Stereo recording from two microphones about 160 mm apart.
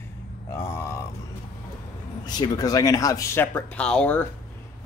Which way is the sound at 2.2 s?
25° left (ahead or behind).